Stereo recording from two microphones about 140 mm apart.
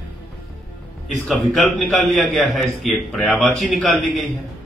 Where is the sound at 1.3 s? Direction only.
Centre (ahead or behind).